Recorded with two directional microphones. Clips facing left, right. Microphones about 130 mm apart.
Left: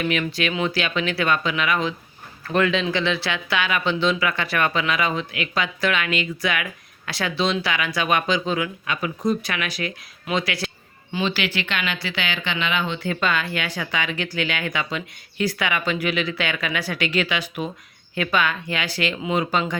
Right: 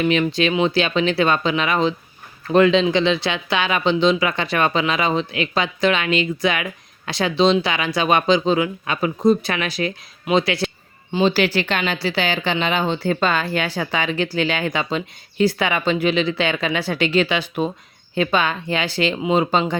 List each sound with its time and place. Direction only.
0.0 s speech: 25° right (ahead or behind)